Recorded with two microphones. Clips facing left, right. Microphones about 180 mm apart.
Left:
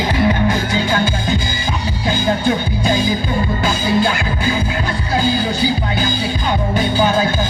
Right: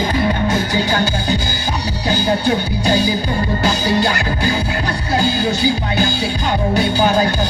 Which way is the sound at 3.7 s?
40° right (ahead or behind).